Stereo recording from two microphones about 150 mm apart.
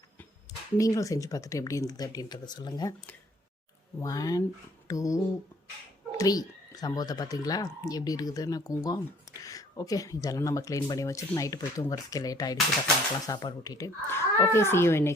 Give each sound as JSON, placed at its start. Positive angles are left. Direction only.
{"t": 0.8, "sound": "speech", "side_deg": 20}
{"t": 4.0, "sound": "speech", "side_deg": 25}